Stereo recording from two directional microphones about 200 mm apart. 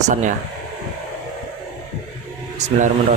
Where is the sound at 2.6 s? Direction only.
35° right (ahead or behind).